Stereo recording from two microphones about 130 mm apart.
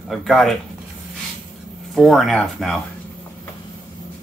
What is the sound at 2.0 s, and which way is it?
Speech, centre (ahead or behind).